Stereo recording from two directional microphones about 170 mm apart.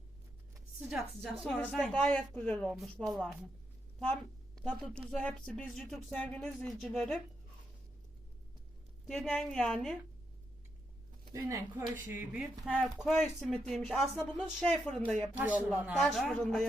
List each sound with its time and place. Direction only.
0.8 s speech: centre (ahead or behind)
4.0 s a woman's voice: 5° left (ahead or behind)
9.0 s speech: 5° left (ahead or behind)
11.3 s speech: 15° right (ahead or behind); by 15.3 s 5° left (ahead or behind)
15.4 s speech: 10° right (ahead or behind)